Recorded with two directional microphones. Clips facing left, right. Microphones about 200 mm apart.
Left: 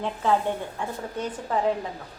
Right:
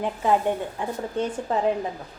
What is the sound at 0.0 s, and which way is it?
A woman's voice, 15° right (ahead or behind).